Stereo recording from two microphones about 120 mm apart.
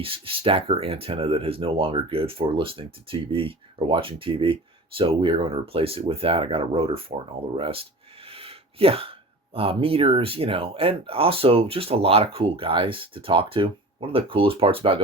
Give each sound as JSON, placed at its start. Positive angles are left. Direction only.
{"t": 0.0, "sound": "speech", "side_deg": -50}